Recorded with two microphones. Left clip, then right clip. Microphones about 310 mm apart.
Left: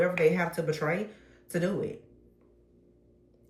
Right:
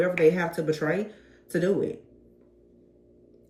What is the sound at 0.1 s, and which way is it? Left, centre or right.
Speech, left.